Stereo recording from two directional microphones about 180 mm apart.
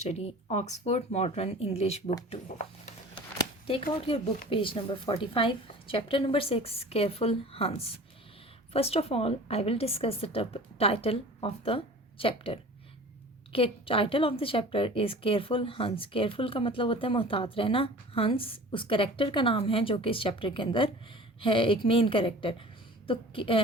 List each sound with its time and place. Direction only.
0.0 s a woman's voice: 35° left (ahead or behind)
3.3 s a sound: 30° left (ahead or behind)
4.4 s a woman's voice: 30° left (ahead or behind)